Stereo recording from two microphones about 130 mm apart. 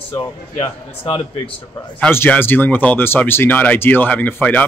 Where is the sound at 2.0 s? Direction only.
15° left (ahead or behind).